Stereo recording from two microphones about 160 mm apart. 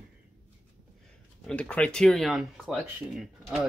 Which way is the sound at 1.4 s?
5° left (ahead or behind).